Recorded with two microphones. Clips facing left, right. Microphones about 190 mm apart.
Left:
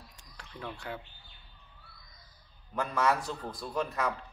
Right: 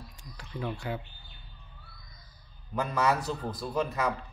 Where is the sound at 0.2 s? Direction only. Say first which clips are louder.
Right 6 dB; 5° right (ahead or behind).